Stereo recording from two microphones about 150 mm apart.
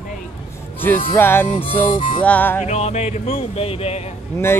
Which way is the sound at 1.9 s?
35° left (ahead or behind).